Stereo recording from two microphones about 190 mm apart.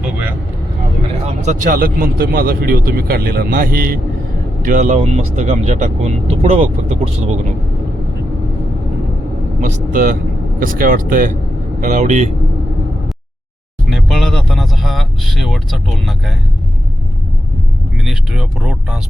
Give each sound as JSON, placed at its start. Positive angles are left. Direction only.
{"t": 0.0, "sound": "vehicle", "side_deg": -10}
{"t": 1.2, "sound": "speech", "side_deg": -40}
{"t": 9.6, "sound": "speech", "side_deg": -40}
{"t": 13.9, "sound": "vehicle", "side_deg": 0}
{"t": 18.0, "sound": "speech", "side_deg": 0}